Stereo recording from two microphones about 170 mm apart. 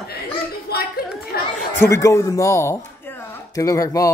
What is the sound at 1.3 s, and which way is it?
Chatter, 70° left (ahead or behind).